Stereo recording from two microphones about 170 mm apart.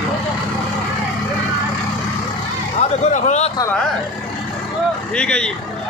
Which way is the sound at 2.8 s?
45° left (ahead or behind).